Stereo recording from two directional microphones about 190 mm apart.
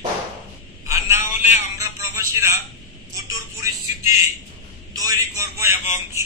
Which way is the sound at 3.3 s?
15° right (ahead or behind).